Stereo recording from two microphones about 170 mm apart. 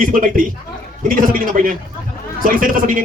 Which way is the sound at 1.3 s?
55° right (ahead or behind).